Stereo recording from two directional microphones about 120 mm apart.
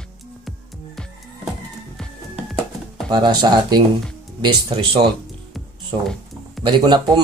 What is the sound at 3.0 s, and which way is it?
Speech, 35° right (ahead or behind).